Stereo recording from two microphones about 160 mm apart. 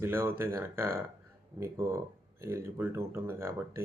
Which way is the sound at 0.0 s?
15° right (ahead or behind).